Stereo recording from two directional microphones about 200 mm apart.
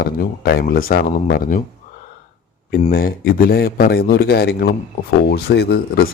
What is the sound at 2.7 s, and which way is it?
Speech, 45° left (ahead or behind).